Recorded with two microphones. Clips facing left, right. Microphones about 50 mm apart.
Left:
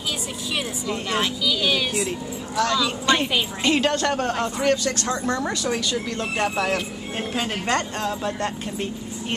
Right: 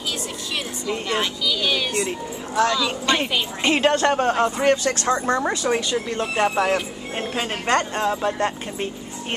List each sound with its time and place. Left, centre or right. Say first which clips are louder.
0.8 s a woman's voice: right 2 dB; centre
3.6 s a woman's voice: right 4 dB; right